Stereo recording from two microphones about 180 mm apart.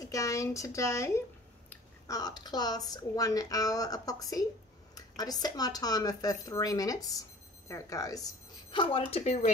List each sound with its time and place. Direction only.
0.0 s a woman's voice: 20° left (ahead or behind); by 9.5 s 40° left (ahead or behind)